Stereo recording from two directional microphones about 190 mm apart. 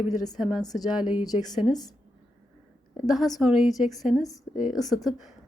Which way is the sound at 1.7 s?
20° left (ahead or behind).